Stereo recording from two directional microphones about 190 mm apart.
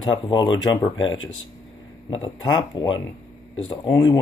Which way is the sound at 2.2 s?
25° left (ahead or behind).